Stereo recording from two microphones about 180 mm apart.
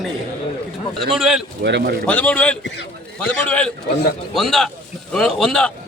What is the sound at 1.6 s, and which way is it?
Speech, 70° right (ahead or behind).